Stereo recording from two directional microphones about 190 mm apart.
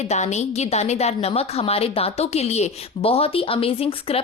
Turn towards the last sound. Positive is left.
turn(degrees=30)  # may be behind; listen again after turning